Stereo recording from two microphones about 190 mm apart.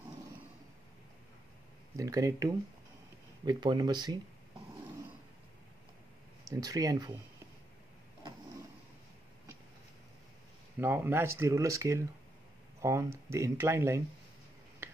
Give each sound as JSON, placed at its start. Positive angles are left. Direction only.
{"t": 2.0, "sound": "speech", "side_deg": -15}
{"t": 6.5, "sound": "speech", "side_deg": -20}
{"t": 10.8, "sound": "speech", "side_deg": -10}